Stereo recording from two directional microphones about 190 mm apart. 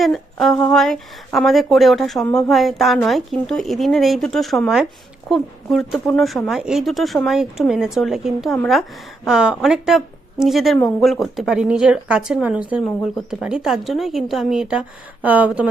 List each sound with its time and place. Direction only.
0.0 s speech: centre (ahead or behind)